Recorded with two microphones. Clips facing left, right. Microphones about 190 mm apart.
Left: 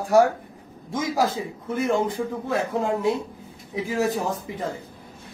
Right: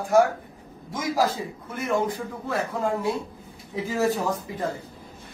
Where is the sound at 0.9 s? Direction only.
25° left (ahead or behind).